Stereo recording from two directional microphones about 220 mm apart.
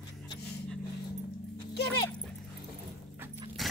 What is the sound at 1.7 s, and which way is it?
Dog, 45° left (ahead or behind).